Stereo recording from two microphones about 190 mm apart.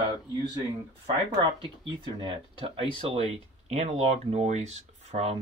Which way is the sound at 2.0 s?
25° right (ahead or behind).